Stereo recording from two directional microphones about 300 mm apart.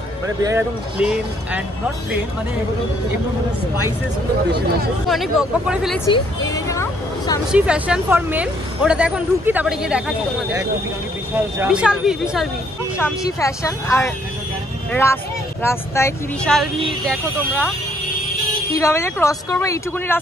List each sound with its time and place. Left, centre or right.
0.4 s speech: centre
5.0 s speech: centre
6.4 s a sound: centre
7.5 s speech: centre
12.9 s speech: centre
18.8 s speech: centre